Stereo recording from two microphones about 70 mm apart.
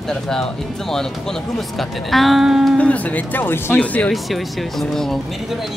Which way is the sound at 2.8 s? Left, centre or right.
Left.